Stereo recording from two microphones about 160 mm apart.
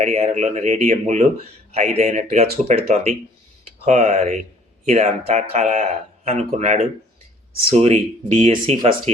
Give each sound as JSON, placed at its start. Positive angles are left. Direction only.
{"t": 0.0, "sound": "speech", "side_deg": -45}